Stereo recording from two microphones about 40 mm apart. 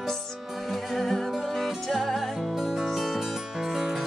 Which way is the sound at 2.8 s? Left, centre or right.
Centre.